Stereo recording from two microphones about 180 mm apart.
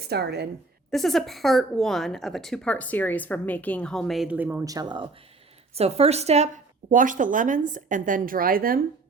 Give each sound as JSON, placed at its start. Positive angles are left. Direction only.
{"t": 0.0, "sound": "a woman's voice", "side_deg": -65}
{"t": 0.9, "sound": "a woman's voice", "side_deg": 0}
{"t": 5.7, "sound": "a woman's voice", "side_deg": -35}